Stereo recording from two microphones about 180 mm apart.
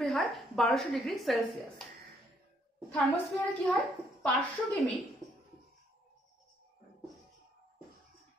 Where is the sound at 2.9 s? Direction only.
10° left (ahead or behind).